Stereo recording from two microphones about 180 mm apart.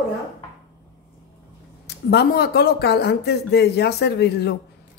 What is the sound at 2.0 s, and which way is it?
Speech, 60° left (ahead or behind).